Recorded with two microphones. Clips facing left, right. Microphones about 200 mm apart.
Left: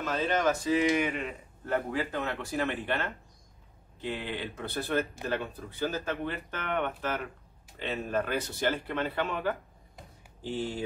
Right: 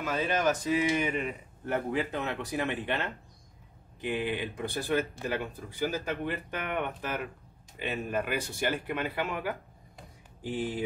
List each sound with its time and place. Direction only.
0.0 s speech: 10° right (ahead or behind)